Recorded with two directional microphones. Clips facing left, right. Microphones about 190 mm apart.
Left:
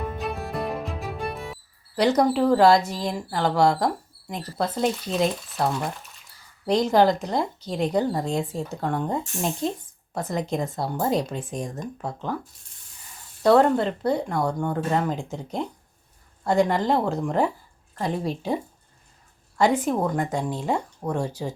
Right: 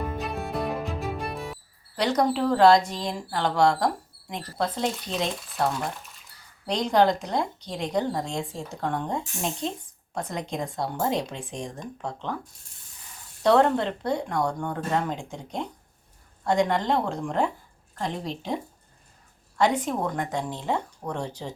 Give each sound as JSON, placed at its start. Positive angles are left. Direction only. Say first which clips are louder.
{"t": 0.0, "sound": "music", "louder": "left 1 dB", "side_deg": 0}
{"t": 2.0, "sound": "speech", "louder": "left 4 dB", "side_deg": 10}
{"t": 13.4, "sound": "speech", "louder": "left 2 dB", "side_deg": 5}